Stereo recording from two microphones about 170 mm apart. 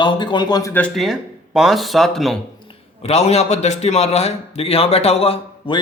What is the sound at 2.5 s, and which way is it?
A man's voice, 35° left (ahead or behind).